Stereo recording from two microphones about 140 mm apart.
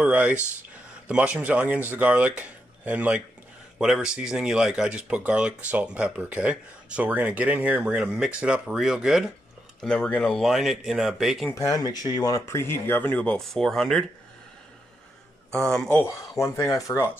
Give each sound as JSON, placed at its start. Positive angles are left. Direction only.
{"t": 0.0, "sound": "speech", "side_deg": -10}
{"t": 11.5, "sound": "speech", "side_deg": 25}
{"t": 15.5, "sound": "speech", "side_deg": 5}
{"t": 16.0, "sound": "speech", "side_deg": 20}